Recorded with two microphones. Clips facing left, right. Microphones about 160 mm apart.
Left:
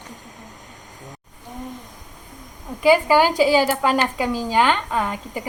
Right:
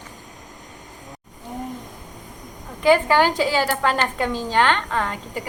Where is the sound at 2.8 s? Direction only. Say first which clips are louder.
Left 1 dB; 10° left (ahead or behind).